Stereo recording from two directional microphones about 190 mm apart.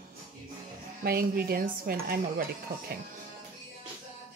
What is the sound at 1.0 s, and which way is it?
Speech, 55° right (ahead or behind).